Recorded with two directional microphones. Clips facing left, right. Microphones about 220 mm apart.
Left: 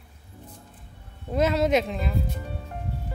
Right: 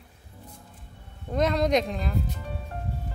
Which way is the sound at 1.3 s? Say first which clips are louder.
Left 1 dB; 5° left (ahead or behind).